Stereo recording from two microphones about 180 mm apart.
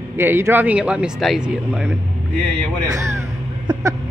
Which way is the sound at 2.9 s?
15° right (ahead or behind).